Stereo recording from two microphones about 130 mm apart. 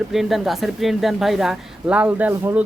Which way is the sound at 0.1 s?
Centre (ahead or behind).